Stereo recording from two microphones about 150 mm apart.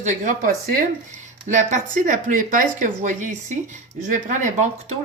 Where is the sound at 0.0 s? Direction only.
60° right (ahead or behind).